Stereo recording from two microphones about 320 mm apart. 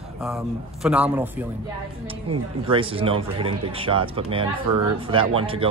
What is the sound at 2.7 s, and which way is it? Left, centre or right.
Speech, centre.